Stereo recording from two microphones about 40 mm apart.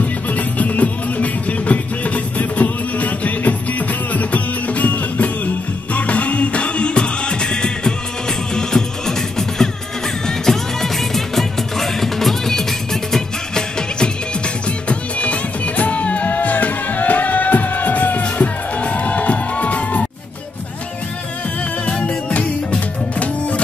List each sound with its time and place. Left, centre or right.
0.0 s music: left; by 13.7 s centre
13.7 s music: left
14.9 s music: left
22.0 s music: left